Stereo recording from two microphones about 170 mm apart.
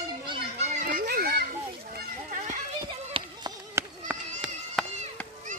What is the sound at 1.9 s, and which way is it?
Children playing, 50° right (ahead or behind).